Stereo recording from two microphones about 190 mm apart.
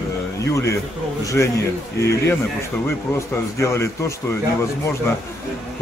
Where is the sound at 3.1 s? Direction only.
15° left (ahead or behind).